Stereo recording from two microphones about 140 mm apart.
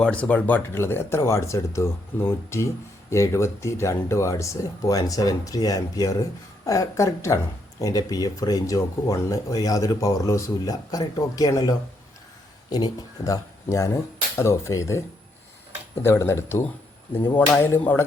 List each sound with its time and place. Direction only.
0.0 s speech: 10° left (ahead or behind); by 11.7 s 25° left (ahead or behind)
12.7 s speech: 25° left (ahead or behind)
16.0 s speech: 20° left (ahead or behind)